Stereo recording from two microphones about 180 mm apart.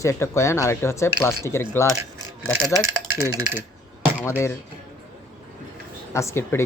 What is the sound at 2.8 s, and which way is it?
Speech, 15° right (ahead or behind).